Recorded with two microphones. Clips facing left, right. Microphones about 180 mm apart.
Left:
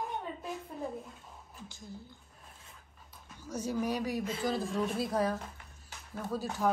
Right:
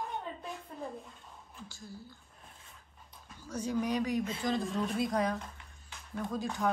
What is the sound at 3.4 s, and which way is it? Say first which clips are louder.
A woman's voice: even; 10° left (ahead or behind).